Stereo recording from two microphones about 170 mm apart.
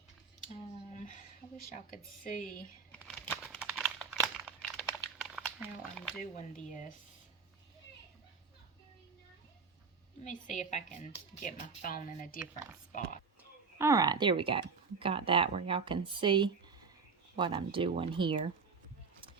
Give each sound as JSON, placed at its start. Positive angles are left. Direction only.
{"t": 0.9, "sound": "a sound", "side_deg": 45}
{"t": 2.9, "sound": "a sound", "side_deg": 10}
{"t": 3.6, "sound": "crumpling", "side_deg": -5}
{"t": 6.3, "sound": "a woman's voice", "side_deg": 45}
{"t": 10.2, "sound": "a woman's voice", "side_deg": 45}
{"t": 12.5, "sound": "speech", "side_deg": -15}
{"t": 12.9, "sound": "oink", "side_deg": 50}
{"t": 13.7, "sound": "speech", "side_deg": -15}